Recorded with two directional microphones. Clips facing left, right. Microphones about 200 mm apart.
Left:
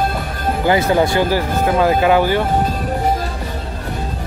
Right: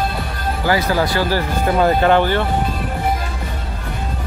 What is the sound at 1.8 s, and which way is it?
Speech, 5° left (ahead or behind).